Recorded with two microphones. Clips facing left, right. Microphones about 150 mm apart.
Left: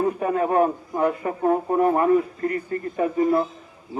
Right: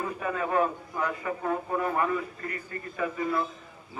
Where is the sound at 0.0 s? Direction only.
40° left (ahead or behind).